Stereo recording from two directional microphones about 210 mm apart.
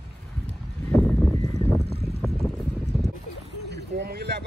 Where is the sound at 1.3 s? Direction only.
30° right (ahead or behind).